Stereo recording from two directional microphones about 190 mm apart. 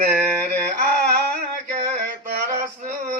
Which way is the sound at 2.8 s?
50° right (ahead or behind).